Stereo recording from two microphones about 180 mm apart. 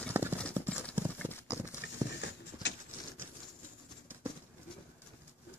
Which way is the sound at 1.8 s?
75° left (ahead or behind).